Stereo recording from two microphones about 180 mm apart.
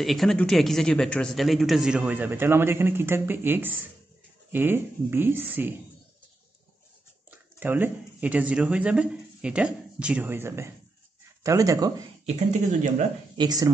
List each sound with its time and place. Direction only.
0.0 s speech: centre (ahead or behind)
7.2 s speech: 10° right (ahead or behind)
13.4 s speech: 20° right (ahead or behind)